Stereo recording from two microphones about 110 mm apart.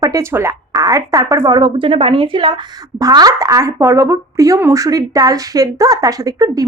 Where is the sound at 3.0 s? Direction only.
35° right (ahead or behind).